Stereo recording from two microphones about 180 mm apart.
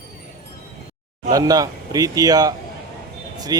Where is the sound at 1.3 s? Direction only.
20° right (ahead or behind).